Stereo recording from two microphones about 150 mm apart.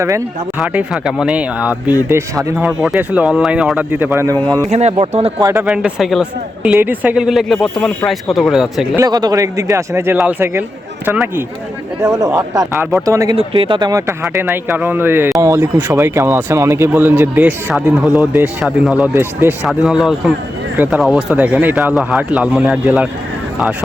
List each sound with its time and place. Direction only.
0.6 s speech: 5° right (ahead or behind); by 4.6 s 25° right (ahead or behind)
4.7 s speech: 45° right (ahead or behind)
5.4 s speech: 20° right (ahead or behind)
5.6 s a man's voice: 5° right (ahead or behind)
9.0 s speech: 25° right (ahead or behind)
13.3 s a man's voice: 35° right (ahead or behind); by 23.0 s 10° right (ahead or behind)